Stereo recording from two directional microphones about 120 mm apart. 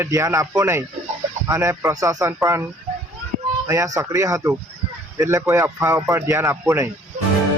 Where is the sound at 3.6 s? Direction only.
25° right (ahead or behind).